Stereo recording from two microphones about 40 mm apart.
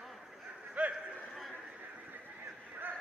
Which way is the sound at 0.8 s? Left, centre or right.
Right.